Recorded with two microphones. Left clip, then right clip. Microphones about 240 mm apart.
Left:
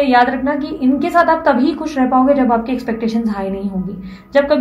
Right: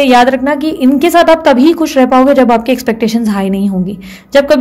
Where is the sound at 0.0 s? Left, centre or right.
Right.